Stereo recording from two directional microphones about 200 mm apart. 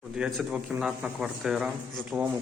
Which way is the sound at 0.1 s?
Centre (ahead or behind).